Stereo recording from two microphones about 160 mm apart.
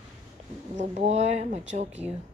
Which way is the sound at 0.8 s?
45° right (ahead or behind).